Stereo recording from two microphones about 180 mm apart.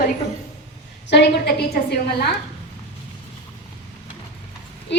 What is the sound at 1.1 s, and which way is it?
A woman's voice, 70° left (ahead or behind).